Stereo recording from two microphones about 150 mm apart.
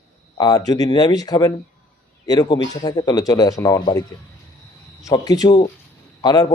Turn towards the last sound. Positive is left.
turn(degrees=25)  # may be behind; listen again after turning